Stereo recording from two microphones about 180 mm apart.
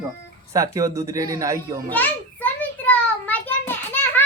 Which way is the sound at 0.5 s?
20° right (ahead or behind).